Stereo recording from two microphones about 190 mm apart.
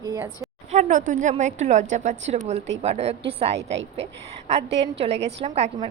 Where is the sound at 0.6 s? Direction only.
40° right (ahead or behind).